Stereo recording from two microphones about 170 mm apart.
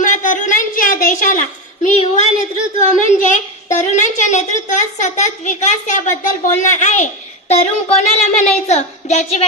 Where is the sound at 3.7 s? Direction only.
45° left (ahead or behind).